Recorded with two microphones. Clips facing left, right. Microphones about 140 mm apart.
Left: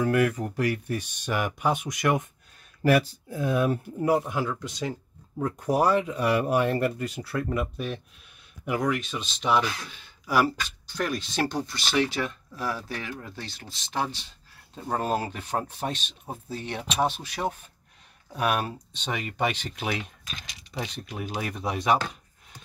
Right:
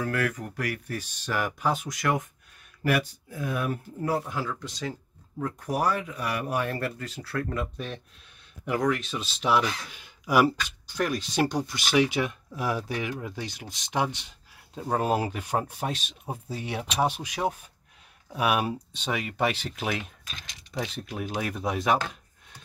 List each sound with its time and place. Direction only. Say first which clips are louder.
0.0 s speech: left 5 dB; 20° left (ahead or behind)
2.8 s speech: left 4 dB; 30° left (ahead or behind); by 22.6 s centre (ahead or behind)